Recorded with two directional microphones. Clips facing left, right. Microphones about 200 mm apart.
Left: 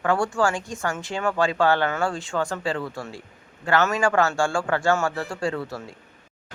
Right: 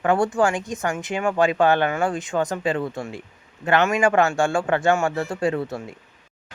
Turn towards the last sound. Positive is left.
turn(degrees=-20)  # may be behind; listen again after turning